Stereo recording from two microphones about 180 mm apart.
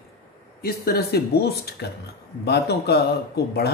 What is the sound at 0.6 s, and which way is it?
A man's voice, 55° left (ahead or behind).